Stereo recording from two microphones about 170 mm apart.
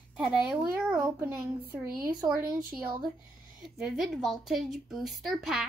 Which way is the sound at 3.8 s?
Centre (ahead or behind).